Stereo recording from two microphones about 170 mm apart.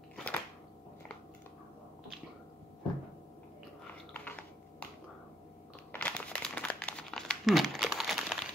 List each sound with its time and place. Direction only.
0.1 s a sound: 10° left (ahead or behind)
4.1 s chewing: 10° left (ahead or behind)
5.9 s crumpling: 10° left (ahead or behind)